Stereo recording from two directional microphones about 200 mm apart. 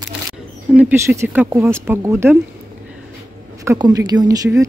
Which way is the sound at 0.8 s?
10° right (ahead or behind).